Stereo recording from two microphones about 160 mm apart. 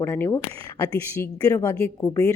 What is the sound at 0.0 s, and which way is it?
A woman's voice, 15° left (ahead or behind).